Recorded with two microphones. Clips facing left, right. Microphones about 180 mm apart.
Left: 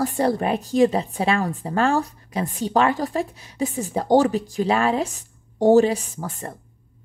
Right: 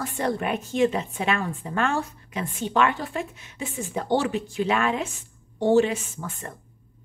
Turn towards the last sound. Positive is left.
turn(degrees=35)  # may be behind; listen again after turning